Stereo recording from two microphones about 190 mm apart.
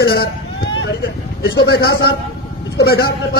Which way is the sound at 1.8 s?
60° left (ahead or behind).